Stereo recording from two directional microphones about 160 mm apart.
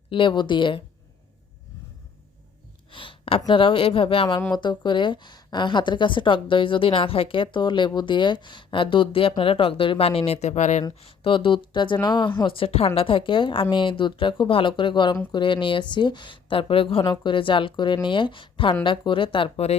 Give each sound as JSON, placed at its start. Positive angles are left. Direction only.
{"t": 0.1, "sound": "a woman's voice", "side_deg": 30}
{"t": 2.9, "sound": "a woman's voice", "side_deg": 30}
{"t": 11.0, "sound": "a woman's voice", "side_deg": 35}